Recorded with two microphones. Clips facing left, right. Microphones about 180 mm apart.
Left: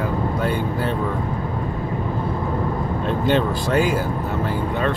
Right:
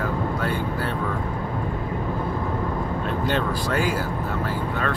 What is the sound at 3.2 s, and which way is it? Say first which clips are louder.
Speech: left 6 dB; 20° left (ahead or behind).